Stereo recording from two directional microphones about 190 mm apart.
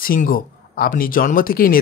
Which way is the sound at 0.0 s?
50° left (ahead or behind).